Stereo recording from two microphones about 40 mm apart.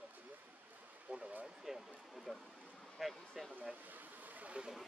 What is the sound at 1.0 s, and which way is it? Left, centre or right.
Speech, right.